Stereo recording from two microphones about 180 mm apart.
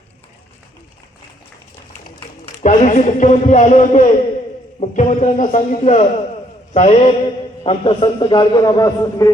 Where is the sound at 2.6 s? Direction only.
45° left (ahead or behind).